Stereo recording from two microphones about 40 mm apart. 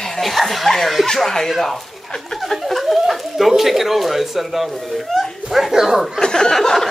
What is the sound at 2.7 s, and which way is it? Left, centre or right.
Speech, centre.